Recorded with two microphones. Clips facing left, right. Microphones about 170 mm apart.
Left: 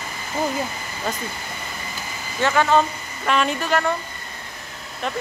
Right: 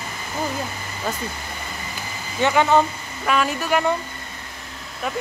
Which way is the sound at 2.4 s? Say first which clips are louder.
Right 1 dB; 15° right (ahead or behind).